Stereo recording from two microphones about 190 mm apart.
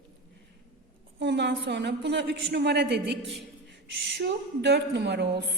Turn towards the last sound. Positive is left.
turn(degrees=-65)  # may be behind; listen again after turning